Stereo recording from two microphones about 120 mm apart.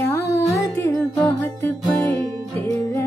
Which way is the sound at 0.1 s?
25° left (ahead or behind).